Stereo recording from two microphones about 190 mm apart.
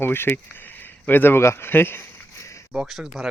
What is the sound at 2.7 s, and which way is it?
Speech, centre (ahead or behind).